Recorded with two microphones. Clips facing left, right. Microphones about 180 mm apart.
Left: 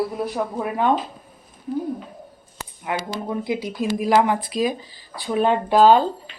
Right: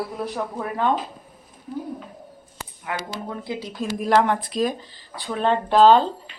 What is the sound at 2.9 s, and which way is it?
Speech, 15° left (ahead or behind).